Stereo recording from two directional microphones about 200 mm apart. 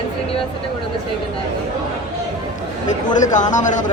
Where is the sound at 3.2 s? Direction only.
40° left (ahead or behind).